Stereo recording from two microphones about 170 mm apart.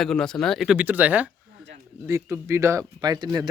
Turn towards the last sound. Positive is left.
turn(degrees=-20)  # may be behind; listen again after turning